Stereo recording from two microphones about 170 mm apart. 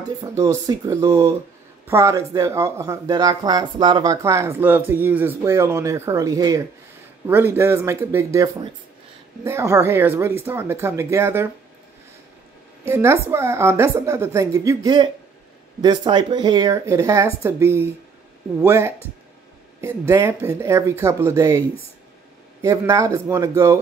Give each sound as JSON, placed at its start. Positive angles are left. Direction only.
{"t": 0.2, "sound": "speech", "side_deg": -20}
{"t": 12.8, "sound": "speech", "side_deg": -15}